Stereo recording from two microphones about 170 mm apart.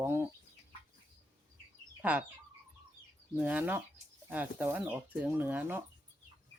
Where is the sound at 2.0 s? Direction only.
10° right (ahead or behind).